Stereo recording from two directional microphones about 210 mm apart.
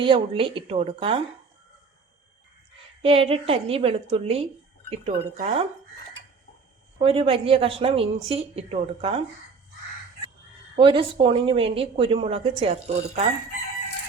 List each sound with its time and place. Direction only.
0.0 s speech: 25° right (ahead or behind)
3.0 s speech: 25° right (ahead or behind)
7.0 s speech: 25° right (ahead or behind)
10.8 s speech: 25° right (ahead or behind)